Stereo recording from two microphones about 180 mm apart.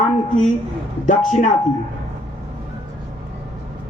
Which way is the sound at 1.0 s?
40° left (ahead or behind).